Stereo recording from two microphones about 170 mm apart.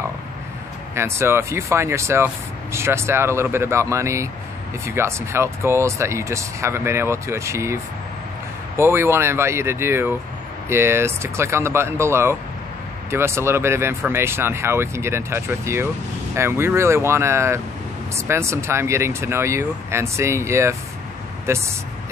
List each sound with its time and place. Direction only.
0.9 s speech: 15° right (ahead or behind)